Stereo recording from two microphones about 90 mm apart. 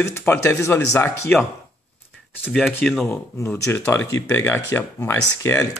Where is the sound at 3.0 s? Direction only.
25° left (ahead or behind).